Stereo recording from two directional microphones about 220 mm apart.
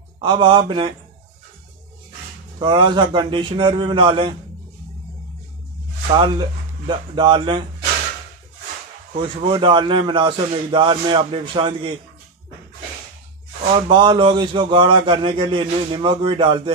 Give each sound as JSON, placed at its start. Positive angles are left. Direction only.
{"t": 0.2, "sound": "speech", "side_deg": -20}
{"t": 2.6, "sound": "speech", "side_deg": -20}
{"t": 6.0, "sound": "speech", "side_deg": -20}
{"t": 9.2, "sound": "speech", "side_deg": -20}
{"t": 13.7, "sound": "speech", "side_deg": -25}